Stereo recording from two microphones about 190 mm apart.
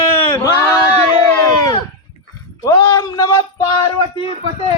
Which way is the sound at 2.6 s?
20° left (ahead or behind).